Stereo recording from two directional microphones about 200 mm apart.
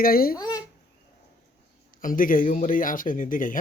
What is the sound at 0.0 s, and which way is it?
Speech, 45° left (ahead or behind).